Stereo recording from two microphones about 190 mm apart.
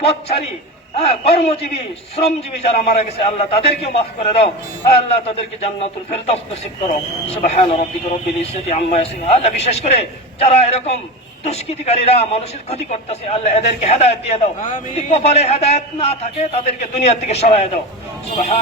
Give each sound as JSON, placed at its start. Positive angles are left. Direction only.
{"t": 0.0, "sound": "a man's voice", "side_deg": 30}
{"t": 2.6, "sound": "a man's voice", "side_deg": 35}
{"t": 7.4, "sound": "a man's voice", "side_deg": 35}